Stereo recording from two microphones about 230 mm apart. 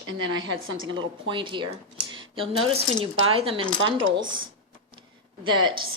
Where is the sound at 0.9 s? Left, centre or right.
Right.